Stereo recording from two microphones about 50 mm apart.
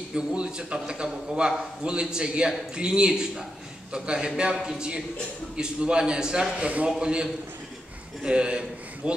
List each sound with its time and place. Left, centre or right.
0.1 s a man's voice: centre